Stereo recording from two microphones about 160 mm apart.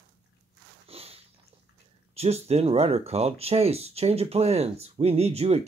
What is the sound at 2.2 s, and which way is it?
Speech, 40° right (ahead or behind).